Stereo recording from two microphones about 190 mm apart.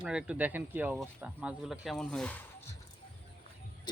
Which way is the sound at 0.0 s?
5° right (ahead or behind).